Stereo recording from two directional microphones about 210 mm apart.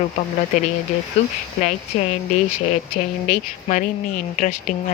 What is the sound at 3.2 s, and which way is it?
Speech, 35° left (ahead or behind).